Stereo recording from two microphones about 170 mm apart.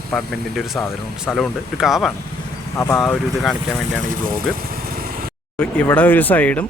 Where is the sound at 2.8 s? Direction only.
15° left (ahead or behind).